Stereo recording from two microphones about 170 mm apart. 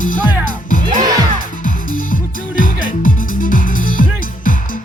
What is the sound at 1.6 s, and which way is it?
Music, 55° left (ahead or behind).